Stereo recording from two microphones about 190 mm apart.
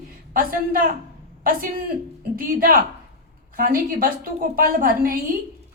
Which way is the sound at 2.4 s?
50° right (ahead or behind).